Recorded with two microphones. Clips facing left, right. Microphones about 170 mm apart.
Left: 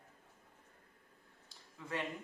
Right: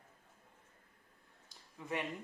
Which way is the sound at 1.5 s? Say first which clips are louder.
Right 2 dB; 15° right (ahead or behind).